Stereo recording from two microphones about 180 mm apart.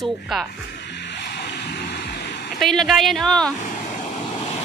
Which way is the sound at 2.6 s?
Centre (ahead or behind).